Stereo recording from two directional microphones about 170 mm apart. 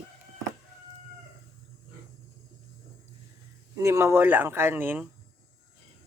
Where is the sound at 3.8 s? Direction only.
15° right (ahead or behind).